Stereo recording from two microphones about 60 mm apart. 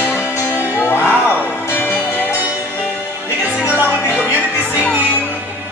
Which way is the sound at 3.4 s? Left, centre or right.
Left.